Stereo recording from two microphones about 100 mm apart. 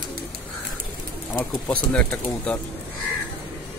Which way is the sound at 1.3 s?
10° left (ahead or behind).